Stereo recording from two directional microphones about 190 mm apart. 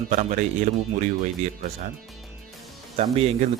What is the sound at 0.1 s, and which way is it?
A man's voice, 40° right (ahead or behind).